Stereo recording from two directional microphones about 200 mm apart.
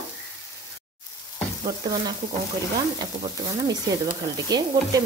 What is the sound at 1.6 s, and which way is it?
Speech, 20° right (ahead or behind).